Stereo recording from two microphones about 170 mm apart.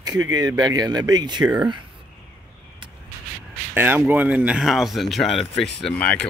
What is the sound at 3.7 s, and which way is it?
Speech, 10° right (ahead or behind).